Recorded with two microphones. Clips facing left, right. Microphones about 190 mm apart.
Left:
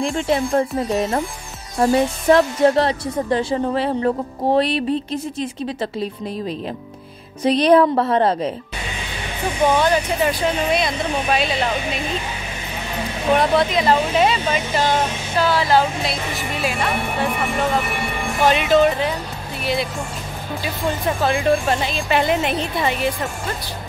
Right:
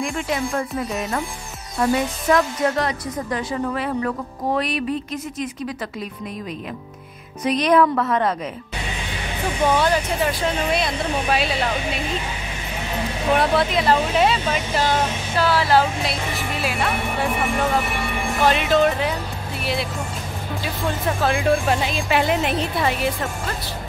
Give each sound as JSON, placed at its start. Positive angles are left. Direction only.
{"t": 0.0, "sound": "a woman's voice", "side_deg": 30}
{"t": 7.4, "sound": "a woman's voice", "side_deg": 30}
{"t": 9.8, "sound": "speech", "side_deg": 0}
{"t": 13.3, "sound": "speech", "side_deg": -5}
{"t": 18.4, "sound": "speech", "side_deg": 0}
{"t": 21.2, "sound": "speech", "side_deg": 0}